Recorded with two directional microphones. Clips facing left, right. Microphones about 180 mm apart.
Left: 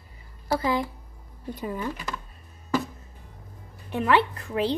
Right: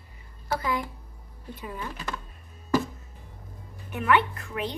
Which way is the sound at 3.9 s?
30° left (ahead or behind).